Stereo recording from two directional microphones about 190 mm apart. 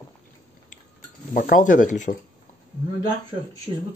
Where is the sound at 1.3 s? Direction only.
45° left (ahead or behind).